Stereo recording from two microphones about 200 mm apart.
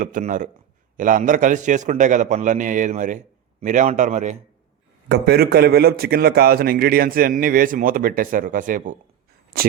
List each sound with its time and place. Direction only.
0.0 s a man's voice: 40° right (ahead or behind)
5.0 s a man's voice: 55° right (ahead or behind)